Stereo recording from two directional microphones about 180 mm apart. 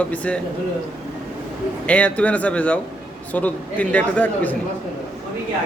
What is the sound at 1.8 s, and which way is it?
Speech, 5° left (ahead or behind).